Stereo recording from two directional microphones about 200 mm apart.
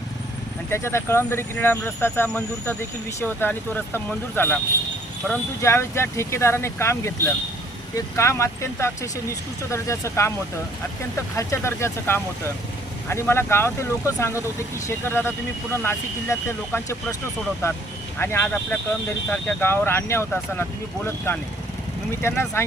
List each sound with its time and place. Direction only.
0.7 s speech: 10° left (ahead or behind)
5.6 s speech: 15° left (ahead or behind)
11.3 s speech: 15° left (ahead or behind)
18.2 s speech: 10° left (ahead or behind)